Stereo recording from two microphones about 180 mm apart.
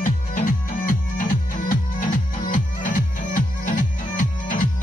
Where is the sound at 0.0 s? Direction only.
50° left (ahead or behind).